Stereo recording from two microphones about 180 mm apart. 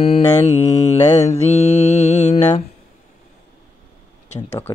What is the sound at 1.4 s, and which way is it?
Mantra, 35° left (ahead or behind).